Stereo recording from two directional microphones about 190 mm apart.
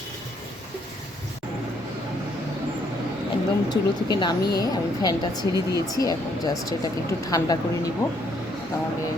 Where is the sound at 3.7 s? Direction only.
20° left (ahead or behind).